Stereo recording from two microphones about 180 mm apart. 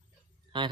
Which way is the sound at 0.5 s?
25° right (ahead or behind).